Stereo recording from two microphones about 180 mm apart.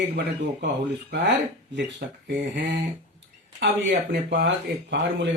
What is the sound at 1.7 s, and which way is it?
Speech, 75° right (ahead or behind).